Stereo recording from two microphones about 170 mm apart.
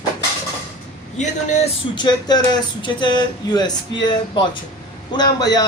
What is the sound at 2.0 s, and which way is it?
A man's voice, 25° left (ahead or behind).